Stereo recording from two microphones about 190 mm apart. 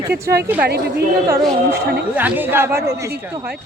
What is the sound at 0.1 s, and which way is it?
Speech, 55° right (ahead or behind).